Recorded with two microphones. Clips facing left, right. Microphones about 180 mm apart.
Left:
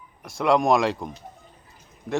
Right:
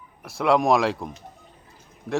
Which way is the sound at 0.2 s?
Centre (ahead or behind).